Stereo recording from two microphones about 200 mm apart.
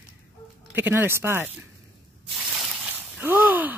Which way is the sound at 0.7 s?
10° right (ahead or behind).